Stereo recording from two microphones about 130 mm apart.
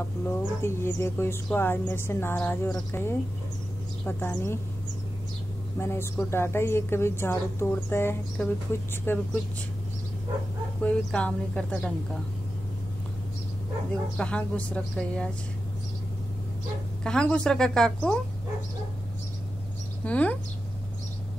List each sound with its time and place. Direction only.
0.3 s a woman's voice: 20° left (ahead or behind)
5.8 s a woman's voice: 20° left (ahead or behind)
10.8 s a woman's voice: 10° left (ahead or behind)
14.1 s a woman's voice: 10° left (ahead or behind)
17.0 s speech: 5° left (ahead or behind)
20.1 s a woman's voice: 10° left (ahead or behind)